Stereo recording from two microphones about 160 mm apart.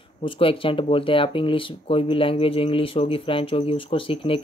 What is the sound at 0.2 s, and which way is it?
Speech, 35° left (ahead or behind).